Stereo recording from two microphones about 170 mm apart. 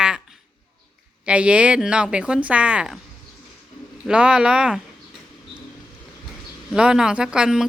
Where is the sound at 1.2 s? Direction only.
5° right (ahead or behind).